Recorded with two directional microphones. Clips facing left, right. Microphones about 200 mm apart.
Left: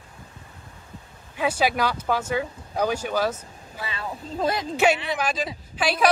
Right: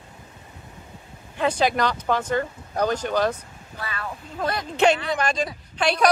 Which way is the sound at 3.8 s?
25° left (ahead or behind).